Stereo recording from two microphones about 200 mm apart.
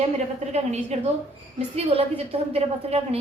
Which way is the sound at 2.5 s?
30° right (ahead or behind).